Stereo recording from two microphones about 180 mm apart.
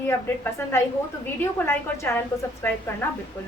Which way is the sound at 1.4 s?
15° left (ahead or behind).